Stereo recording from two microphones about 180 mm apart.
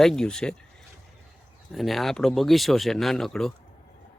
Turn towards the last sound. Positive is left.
turn(degrees=0)  # may be behind; listen again after turning